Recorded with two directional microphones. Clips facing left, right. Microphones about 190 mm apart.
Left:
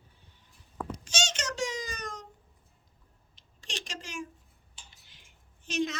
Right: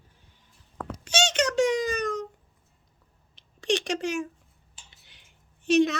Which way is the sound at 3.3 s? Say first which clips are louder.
Right 16 dB; 70° right (ahead or behind).